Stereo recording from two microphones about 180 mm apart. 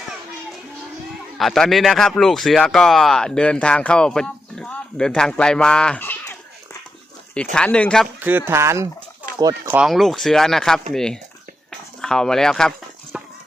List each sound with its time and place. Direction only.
1.4 s speech: centre (ahead or behind)
7.5 s speech: 5° left (ahead or behind)
8.2 s speech: 10° right (ahead or behind)
9.7 s speech: centre (ahead or behind)
13.1 s clip-clop: 5° right (ahead or behind)